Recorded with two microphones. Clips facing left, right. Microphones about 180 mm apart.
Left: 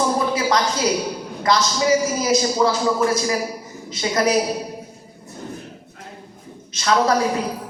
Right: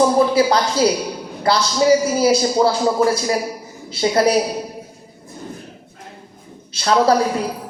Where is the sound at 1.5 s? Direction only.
35° right (ahead or behind).